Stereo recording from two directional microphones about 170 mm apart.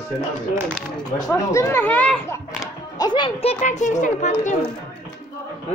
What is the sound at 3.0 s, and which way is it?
A child's voice, 25° left (ahead or behind).